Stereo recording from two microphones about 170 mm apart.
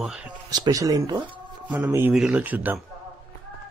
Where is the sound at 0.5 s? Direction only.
20° right (ahead or behind).